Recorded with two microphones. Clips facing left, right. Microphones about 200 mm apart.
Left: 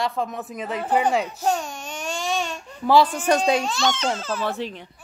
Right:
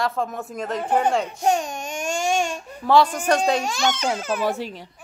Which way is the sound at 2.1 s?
50° right (ahead or behind).